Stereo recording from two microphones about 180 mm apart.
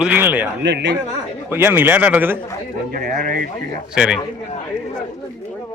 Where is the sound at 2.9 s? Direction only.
50° right (ahead or behind).